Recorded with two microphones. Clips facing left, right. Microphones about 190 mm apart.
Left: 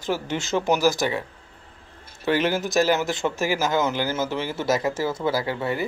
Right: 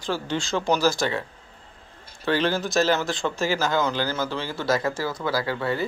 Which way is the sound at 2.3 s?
15° left (ahead or behind).